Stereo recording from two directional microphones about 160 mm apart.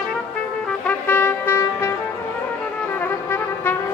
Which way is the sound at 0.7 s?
10° left (ahead or behind).